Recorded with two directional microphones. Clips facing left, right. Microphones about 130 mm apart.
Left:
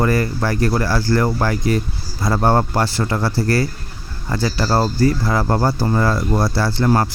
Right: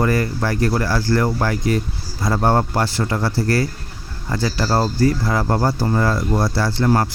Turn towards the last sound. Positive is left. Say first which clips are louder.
# left 1 dB
turn(degrees=30)  # may be behind; listen again after turning